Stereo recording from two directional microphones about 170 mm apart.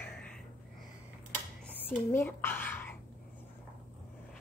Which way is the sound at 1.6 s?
10° left (ahead or behind).